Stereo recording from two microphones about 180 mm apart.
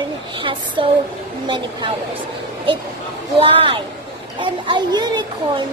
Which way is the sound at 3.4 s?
30° right (ahead or behind).